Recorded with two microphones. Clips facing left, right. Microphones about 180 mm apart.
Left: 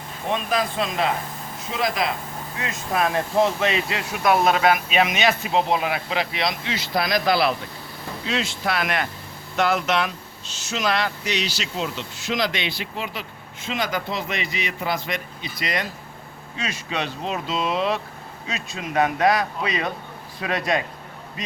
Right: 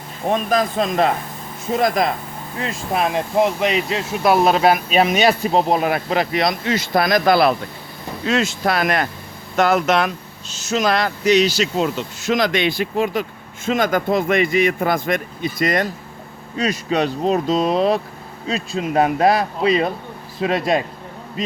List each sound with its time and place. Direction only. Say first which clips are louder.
0.3 s speech: right 5 dB; 45° right (ahead or behind)
2.6 s speech: right 3 dB; 30° right (ahead or behind)